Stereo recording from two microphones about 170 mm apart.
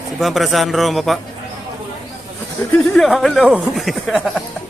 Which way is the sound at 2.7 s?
5° left (ahead or behind).